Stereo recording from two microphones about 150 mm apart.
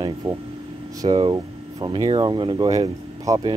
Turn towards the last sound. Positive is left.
turn(degrees=-30)  # may be behind; listen again after turning